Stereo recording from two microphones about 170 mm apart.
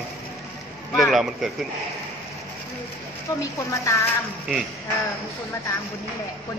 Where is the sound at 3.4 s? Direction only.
15° left (ahead or behind).